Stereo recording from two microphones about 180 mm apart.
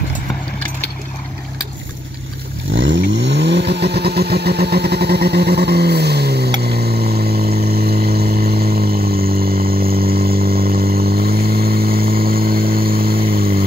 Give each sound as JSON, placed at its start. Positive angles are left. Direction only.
{"t": 2.7, "sound": "vehicle", "side_deg": -90}